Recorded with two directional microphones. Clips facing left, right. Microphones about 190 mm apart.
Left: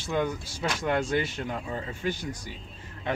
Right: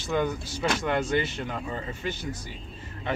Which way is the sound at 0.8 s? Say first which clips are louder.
Left 2 dB; 10° left (ahead or behind).